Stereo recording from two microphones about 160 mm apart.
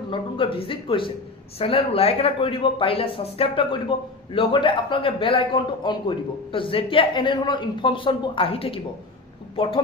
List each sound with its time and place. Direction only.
0.1 s a man's voice: 35° left (ahead or behind)